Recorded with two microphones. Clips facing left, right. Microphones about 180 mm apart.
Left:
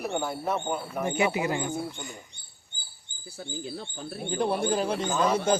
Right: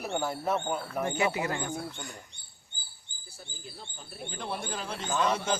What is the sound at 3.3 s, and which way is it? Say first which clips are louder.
Speech: left 11 dB; 80° left.